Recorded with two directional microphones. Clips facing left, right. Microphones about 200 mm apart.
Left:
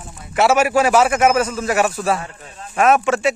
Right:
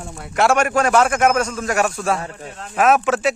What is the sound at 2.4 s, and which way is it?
Speech, 70° right (ahead or behind).